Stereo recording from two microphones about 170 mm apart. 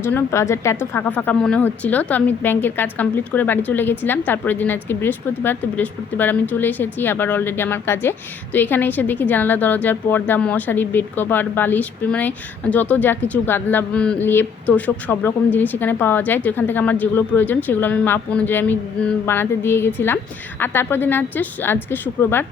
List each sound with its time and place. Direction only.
0.0 s a woman's voice: 15° left (ahead or behind)